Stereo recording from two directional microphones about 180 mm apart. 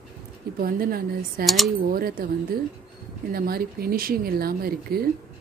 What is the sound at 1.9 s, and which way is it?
Speech, 55° right (ahead or behind).